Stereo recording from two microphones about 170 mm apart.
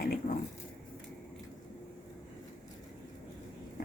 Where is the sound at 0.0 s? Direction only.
60° left (ahead or behind).